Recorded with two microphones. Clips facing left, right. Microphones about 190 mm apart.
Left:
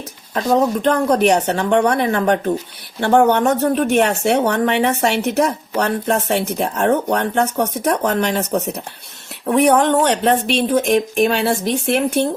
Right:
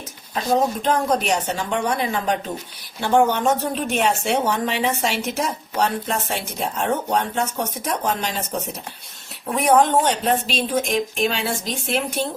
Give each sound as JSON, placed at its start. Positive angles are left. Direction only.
{"t": 0.3, "sound": "speech", "side_deg": 65}